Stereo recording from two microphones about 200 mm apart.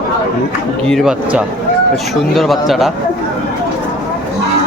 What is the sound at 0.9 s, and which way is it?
Speech, centre (ahead or behind).